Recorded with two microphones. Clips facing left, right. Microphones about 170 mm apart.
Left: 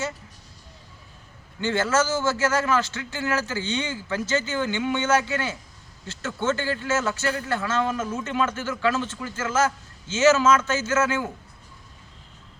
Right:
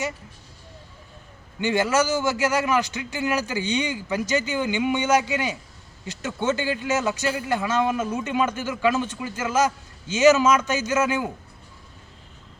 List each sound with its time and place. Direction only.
1.6 s a man's voice: 15° right (ahead or behind)